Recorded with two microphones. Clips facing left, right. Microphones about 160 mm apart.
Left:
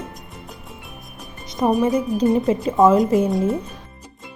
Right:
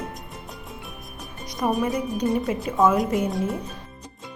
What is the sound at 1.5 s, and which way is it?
Speech, 25° left (ahead or behind).